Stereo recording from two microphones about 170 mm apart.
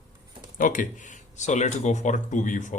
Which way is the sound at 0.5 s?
50° left (ahead or behind).